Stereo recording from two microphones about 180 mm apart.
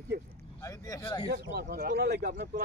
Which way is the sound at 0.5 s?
20° left (ahead or behind).